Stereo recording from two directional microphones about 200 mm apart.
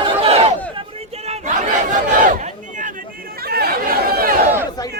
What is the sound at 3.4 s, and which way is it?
Chatter, 50° right (ahead or behind).